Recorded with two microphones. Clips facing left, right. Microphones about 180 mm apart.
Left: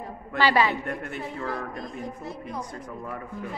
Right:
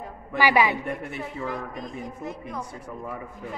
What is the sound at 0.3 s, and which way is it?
A man's voice, 10° right (ahead or behind).